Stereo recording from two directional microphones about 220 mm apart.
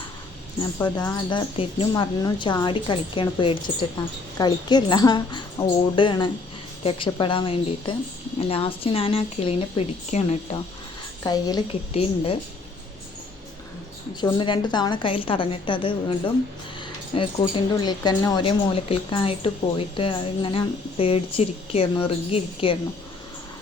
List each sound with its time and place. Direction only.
0.6 s speech: 20° left (ahead or behind)
11.2 s a woman's voice: 15° left (ahead or behind)
14.2 s speech: 20° left (ahead or behind)
17.2 s speech: 20° left (ahead or behind)